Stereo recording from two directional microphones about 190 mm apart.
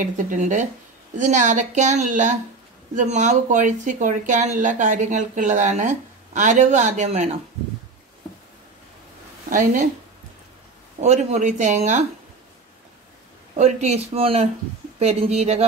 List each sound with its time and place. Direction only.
0.0 s speech: 40° right (ahead or behind)
9.5 s speech: 45° right (ahead or behind)
11.0 s speech: 35° right (ahead or behind)
13.6 s speech: 35° right (ahead or behind)